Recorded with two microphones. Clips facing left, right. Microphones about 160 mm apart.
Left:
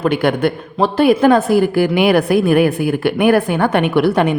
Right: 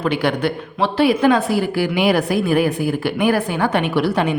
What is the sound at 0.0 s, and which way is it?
A woman's voice, 50° left (ahead or behind).